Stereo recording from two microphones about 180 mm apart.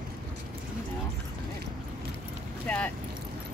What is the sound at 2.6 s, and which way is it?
Speech, 10° left (ahead or behind).